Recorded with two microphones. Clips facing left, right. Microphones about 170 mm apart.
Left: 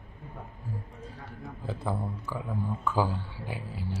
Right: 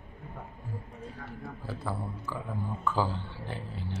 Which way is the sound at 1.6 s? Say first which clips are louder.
Left 4 dB; 15° left (ahead or behind).